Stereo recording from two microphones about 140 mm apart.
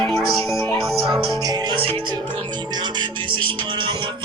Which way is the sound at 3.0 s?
35° right (ahead or behind).